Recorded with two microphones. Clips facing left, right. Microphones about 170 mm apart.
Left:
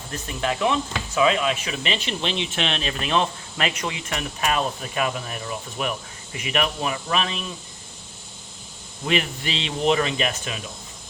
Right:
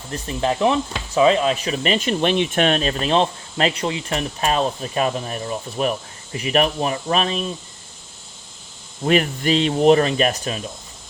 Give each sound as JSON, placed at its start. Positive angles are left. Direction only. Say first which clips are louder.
{"t": 0.1, "sound": "speech", "louder": "right 5 dB", "side_deg": -30}
{"t": 9.0, "sound": "speech", "louder": "right 7 dB", "side_deg": -45}